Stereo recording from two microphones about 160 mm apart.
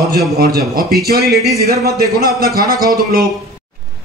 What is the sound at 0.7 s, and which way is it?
Speech, 70° right (ahead or behind).